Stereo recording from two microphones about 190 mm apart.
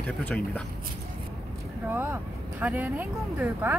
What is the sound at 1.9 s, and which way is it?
Speech, 10° right (ahead or behind).